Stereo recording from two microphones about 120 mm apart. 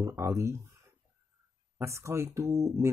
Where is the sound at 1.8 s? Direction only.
25° right (ahead or behind).